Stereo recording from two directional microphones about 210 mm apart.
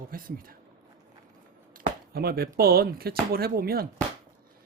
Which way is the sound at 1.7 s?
45° right (ahead or behind).